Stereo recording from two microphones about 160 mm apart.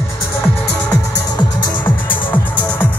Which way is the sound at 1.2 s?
25° left (ahead or behind).